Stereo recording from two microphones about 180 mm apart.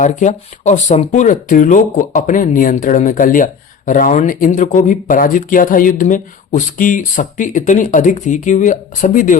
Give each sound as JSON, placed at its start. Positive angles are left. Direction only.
{"t": 0.0, "sound": "speech", "side_deg": 40}